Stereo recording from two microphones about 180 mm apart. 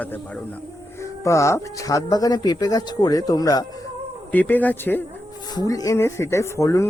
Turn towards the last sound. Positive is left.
turn(degrees=15)  # may be behind; listen again after turning